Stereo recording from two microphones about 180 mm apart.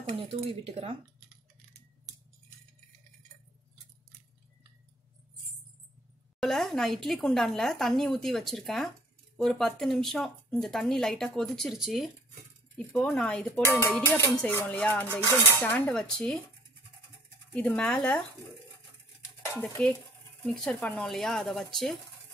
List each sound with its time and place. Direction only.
0.3 s speech: 30° right (ahead or behind)
6.4 s speech: centre (ahead or behind)
13.7 s dishes: 15° left (ahead or behind)
17.6 s dishes: 5° left (ahead or behind)
19.8 s speech: 5° left (ahead or behind)